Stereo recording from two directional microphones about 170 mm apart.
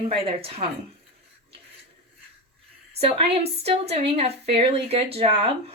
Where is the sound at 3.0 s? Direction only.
35° right (ahead or behind).